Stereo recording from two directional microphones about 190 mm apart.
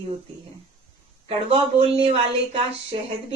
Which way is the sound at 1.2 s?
30° right (ahead or behind).